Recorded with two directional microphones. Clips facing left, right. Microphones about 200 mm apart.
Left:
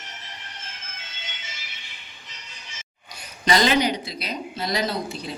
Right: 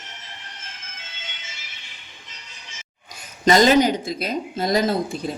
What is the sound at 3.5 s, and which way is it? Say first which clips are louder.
Speech: right 5 dB; 45° right (ahead or behind).